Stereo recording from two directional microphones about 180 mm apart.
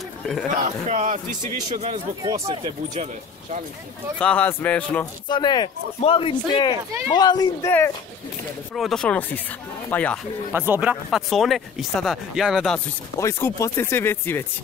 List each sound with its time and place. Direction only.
0.7 s a man's voice: 40° right (ahead or behind)
2.3 s speech: 30° right (ahead or behind)
4.2 s speech: 10° left (ahead or behind)
5.3 s speech: 25° left (ahead or behind)
8.7 s speech: centre (ahead or behind)
10.5 s speech: 10° right (ahead or behind)
13.2 s speech: 15° left (ahead or behind)